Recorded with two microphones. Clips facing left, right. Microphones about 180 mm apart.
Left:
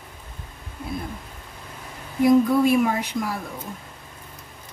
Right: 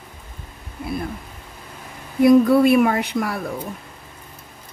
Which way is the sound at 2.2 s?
70° right (ahead or behind).